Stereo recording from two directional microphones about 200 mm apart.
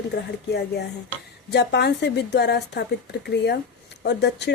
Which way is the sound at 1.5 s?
55° left (ahead or behind).